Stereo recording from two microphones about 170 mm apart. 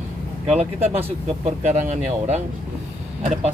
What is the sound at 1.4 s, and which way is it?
Speech, 40° right (ahead or behind).